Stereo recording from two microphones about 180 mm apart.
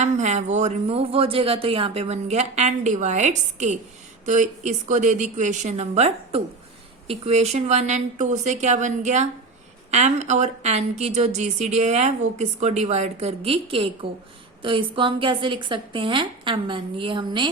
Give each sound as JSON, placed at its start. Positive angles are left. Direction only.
{"t": 0.0, "sound": "a woman's voice", "side_deg": -40}